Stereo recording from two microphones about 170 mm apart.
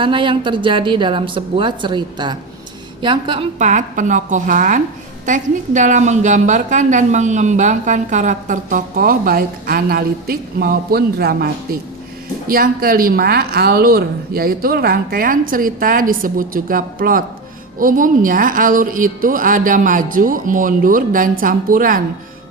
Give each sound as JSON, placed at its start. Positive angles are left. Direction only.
{"t": 0.0, "sound": "a woman's voice", "side_deg": -30}
{"t": 3.6, "sound": "a woman's voice", "side_deg": -45}